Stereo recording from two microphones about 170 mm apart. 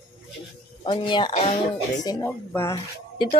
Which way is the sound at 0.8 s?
30° left (ahead or behind).